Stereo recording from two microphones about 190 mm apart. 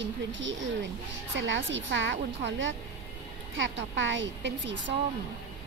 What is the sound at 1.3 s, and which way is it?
A woman's voice, 80° right.